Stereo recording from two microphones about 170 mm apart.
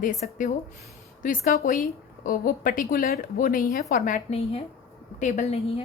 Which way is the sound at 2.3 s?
55° left (ahead or behind).